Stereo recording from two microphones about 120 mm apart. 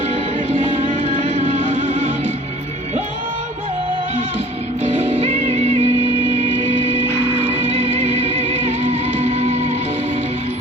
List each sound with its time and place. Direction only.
0.1 s music: 55° right (ahead or behind)
4.8 s music: 60° right (ahead or behind)
6.8 s music: 55° right (ahead or behind)